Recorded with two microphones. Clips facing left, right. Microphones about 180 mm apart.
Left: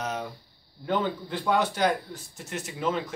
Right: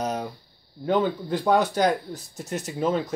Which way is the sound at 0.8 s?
40° right (ahead or behind).